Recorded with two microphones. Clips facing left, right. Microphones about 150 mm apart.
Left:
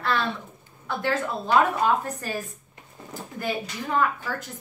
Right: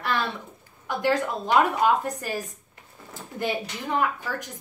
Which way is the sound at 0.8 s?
15° right (ahead or behind).